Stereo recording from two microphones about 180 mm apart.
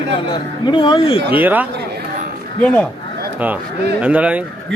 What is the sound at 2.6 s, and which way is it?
Speech, 5° left (ahead or behind).